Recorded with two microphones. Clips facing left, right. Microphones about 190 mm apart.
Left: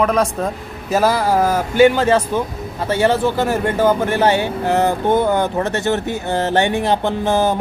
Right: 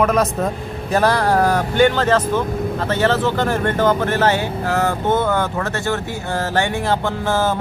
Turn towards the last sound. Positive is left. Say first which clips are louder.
# left 3 dB
turn(degrees=15)  # may be behind; listen again after turning